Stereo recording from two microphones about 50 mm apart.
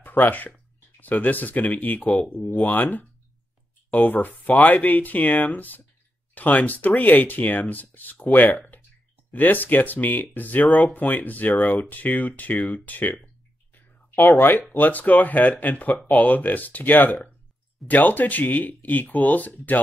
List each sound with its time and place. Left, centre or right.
0.0 s speech: left
2.0 s speech: left
2.3 s speech: left